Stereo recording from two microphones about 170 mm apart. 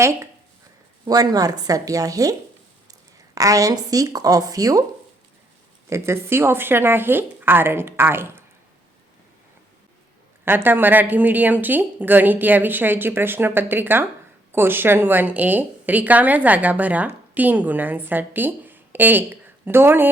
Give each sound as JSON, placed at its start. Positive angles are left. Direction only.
{"t": 0.0, "sound": "a woman's voice", "side_deg": -15}
{"t": 3.3, "sound": "speech", "side_deg": -20}
{"t": 5.9, "sound": "a woman's voice", "side_deg": -15}
{"t": 10.4, "sound": "a woman's voice", "side_deg": -10}